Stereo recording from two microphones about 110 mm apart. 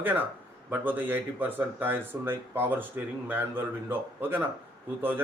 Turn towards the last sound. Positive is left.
turn(degrees=-20)  # may be behind; listen again after turning